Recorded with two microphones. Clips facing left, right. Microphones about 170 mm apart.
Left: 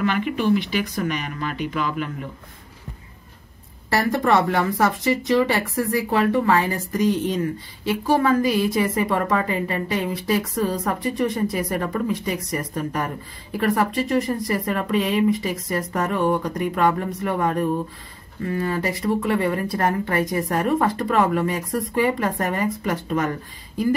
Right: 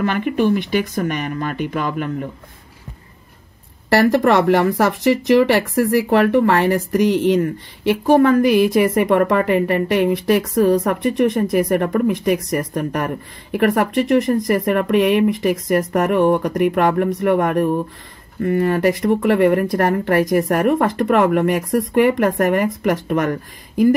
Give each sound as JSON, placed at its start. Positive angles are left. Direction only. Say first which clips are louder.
{"t": 0.0, "sound": "speech", "louder": "right 4 dB", "side_deg": -50}
{"t": 3.9, "sound": "speech", "louder": "right 6 dB", "side_deg": -70}